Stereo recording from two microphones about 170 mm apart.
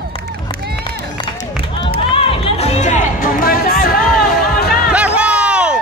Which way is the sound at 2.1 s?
35° left (ahead or behind).